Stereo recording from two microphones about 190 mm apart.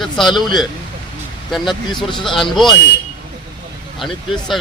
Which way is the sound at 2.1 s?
Centre (ahead or behind).